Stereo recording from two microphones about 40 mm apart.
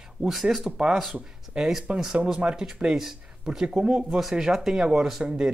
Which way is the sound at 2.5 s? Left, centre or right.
Centre.